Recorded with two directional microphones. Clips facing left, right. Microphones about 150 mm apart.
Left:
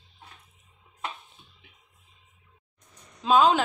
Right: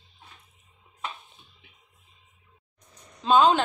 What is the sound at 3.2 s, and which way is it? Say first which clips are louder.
Speech: right 1 dB; 5° left (ahead or behind).